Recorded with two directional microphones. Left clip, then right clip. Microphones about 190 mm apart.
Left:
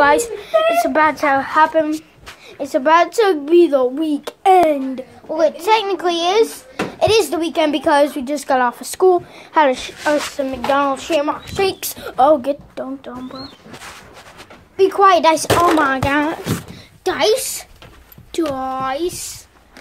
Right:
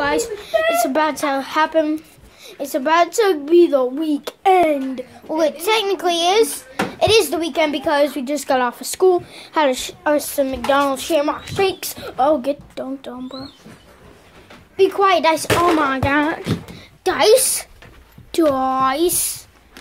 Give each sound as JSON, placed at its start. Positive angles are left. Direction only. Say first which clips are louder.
{"t": 0.0, "sound": "a sound", "louder": "left 6 dB", "side_deg": 10}
{"t": 0.4, "sound": "a woman's voice", "louder": "left 2 dB", "side_deg": 0}
{"t": 2.6, "sound": "a woman's voice", "louder": "left 3 dB", "side_deg": 10}
{"t": 8.1, "sound": "a woman's voice", "louder": "left 1 dB", "side_deg": 5}
{"t": 11.1, "sound": "a woman's voice", "louder": "right 1 dB", "side_deg": 15}
{"t": 14.8, "sound": "speech", "louder": "left 3 dB", "side_deg": 10}
{"t": 17.0, "sound": "a child's voice", "louder": "right 1 dB", "side_deg": -15}
{"t": 17.3, "sound": "a child's voice", "louder": "right 4 dB", "side_deg": -25}